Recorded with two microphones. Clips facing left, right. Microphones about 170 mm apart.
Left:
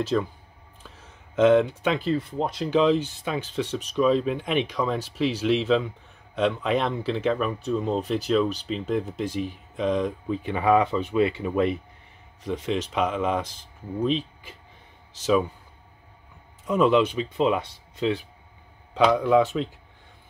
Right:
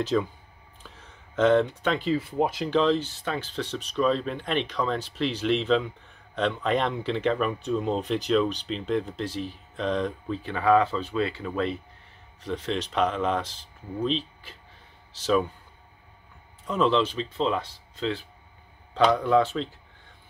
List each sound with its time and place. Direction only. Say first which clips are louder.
0.0 s speech: even; centre (ahead or behind)
15.2 s speech: left 2 dB; 5° left (ahead or behind)
16.6 s speech: left 3 dB; 10° left (ahead or behind)
19.0 s speech: left 2 dB; 10° left (ahead or behind)